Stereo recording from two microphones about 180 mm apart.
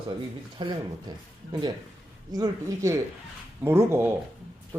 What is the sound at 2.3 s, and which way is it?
Speech, 20° right (ahead or behind).